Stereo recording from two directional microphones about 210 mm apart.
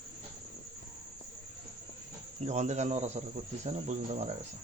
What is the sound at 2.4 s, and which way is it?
Speech, 35° right (ahead or behind).